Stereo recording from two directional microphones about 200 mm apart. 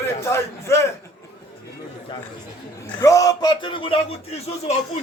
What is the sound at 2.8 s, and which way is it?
A man's voice, 15° left (ahead or behind).